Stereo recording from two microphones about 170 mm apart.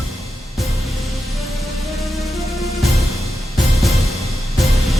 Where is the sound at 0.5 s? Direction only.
Centre (ahead or behind).